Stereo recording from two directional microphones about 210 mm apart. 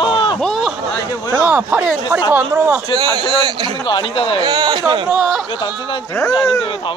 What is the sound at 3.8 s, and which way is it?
Speech, 25° left (ahead or behind).